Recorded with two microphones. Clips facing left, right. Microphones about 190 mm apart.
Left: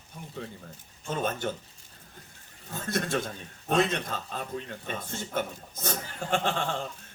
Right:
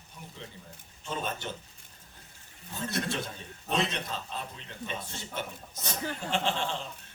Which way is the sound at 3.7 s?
50° left (ahead or behind).